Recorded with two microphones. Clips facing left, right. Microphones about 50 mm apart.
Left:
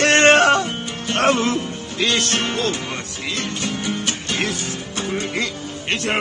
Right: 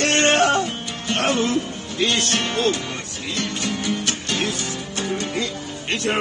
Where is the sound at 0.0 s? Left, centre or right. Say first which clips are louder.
Left 4 dB; left.